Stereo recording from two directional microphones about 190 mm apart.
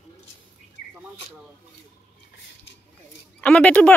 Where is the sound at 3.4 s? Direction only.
5° left (ahead or behind).